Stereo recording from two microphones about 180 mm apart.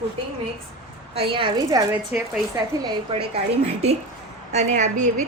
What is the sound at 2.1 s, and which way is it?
Speech, 10° right (ahead or behind).